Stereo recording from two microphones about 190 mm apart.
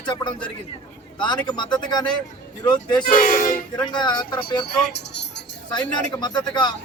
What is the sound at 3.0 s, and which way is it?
Speech, 45° left (ahead or behind).